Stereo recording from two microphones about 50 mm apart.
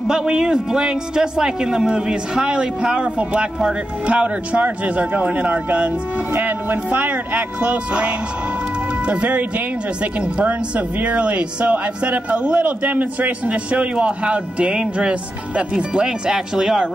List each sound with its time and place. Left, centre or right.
0.1 s speech: centre